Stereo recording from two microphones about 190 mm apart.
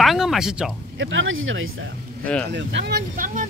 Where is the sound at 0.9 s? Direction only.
90° right.